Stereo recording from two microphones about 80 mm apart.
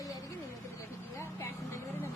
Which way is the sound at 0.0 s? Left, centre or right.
Left.